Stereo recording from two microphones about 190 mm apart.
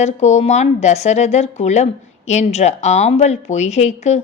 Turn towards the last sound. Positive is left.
turn(degrees=35)  # may be behind; listen again after turning